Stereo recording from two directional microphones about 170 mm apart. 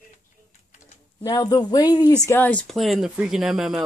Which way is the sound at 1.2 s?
20° left (ahead or behind).